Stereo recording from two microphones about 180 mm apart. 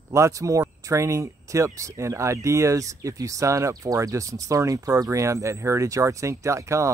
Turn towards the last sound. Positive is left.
turn(degrees=-15)  # may be behind; listen again after turning